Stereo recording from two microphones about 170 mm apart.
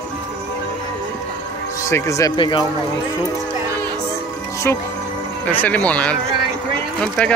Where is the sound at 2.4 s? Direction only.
30° left (ahead or behind).